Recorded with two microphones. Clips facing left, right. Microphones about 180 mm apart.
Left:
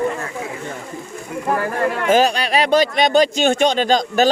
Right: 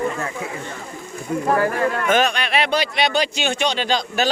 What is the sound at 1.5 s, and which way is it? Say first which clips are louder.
Speech: even; 5° left (ahead or behind).